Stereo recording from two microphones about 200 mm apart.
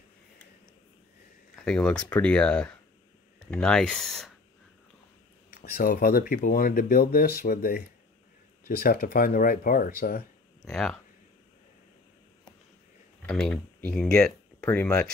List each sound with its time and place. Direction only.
1.5 s speech: 5° left (ahead or behind)
5.5 s speech: 45° left (ahead or behind)
10.6 s speech: centre (ahead or behind)
13.3 s speech: 5° left (ahead or behind)